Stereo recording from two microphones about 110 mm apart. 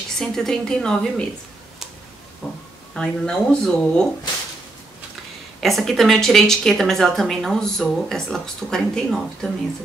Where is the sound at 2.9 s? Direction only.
5° left (ahead or behind).